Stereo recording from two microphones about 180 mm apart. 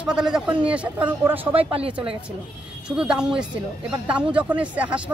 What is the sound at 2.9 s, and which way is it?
Speech, 5° right (ahead or behind).